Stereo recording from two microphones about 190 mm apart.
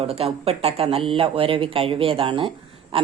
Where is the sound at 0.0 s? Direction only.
30° right (ahead or behind).